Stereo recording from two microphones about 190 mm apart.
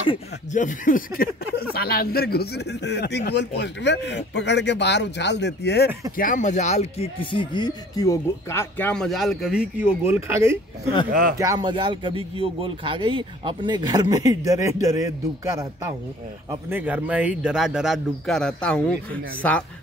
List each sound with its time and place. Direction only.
0.1 s speech: 40° left (ahead or behind); by 5.9 s 60° left (ahead or behind)
6.1 s speech: 45° left (ahead or behind); by 10.6 s 15° right (ahead or behind)
11.1 s speech: 50° right (ahead or behind)
11.3 s speech: 20° right (ahead or behind); by 19.6 s 5° left (ahead or behind)